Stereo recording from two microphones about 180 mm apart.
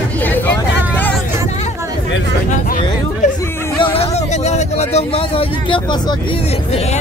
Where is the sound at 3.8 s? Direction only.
30° left (ahead or behind).